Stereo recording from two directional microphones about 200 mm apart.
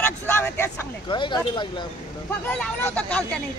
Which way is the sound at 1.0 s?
25° left (ahead or behind).